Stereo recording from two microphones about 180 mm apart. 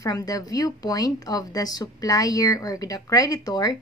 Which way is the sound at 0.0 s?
20° left (ahead or behind).